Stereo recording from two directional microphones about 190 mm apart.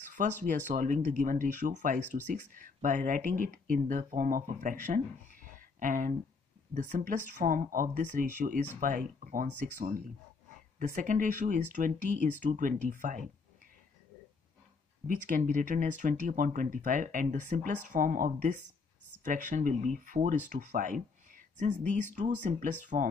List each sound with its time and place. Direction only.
0.1 s speech: 40° right (ahead or behind)
15.0 s speech: 45° right (ahead or behind)